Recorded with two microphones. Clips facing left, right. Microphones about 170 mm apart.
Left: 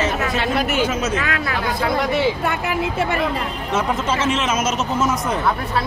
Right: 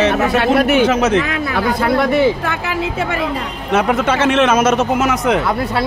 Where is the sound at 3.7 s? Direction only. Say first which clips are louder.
Right 6 dB; 65° right (ahead or behind).